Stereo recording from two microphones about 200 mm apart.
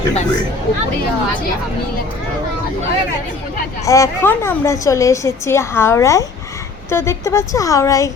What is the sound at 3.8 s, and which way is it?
A woman's voice, 15° left (ahead or behind).